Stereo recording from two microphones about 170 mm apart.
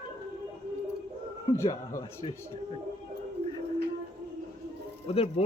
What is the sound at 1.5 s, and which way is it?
Speech, 15° left (ahead or behind).